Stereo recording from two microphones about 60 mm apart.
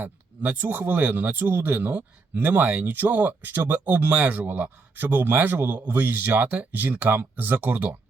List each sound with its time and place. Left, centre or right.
0.0 s speech: right